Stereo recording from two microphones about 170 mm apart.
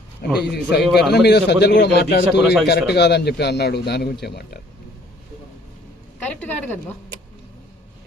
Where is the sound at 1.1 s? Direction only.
75° left (ahead or behind).